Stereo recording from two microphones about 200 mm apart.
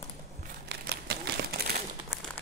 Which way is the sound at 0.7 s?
55° right (ahead or behind).